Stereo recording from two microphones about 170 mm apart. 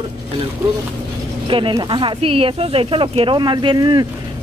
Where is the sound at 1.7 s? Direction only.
25° right (ahead or behind).